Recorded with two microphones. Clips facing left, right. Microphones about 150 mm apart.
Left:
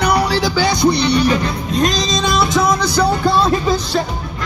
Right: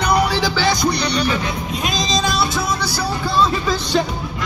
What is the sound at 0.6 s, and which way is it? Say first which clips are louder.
Music: left 6 dB; 25° left (ahead or behind).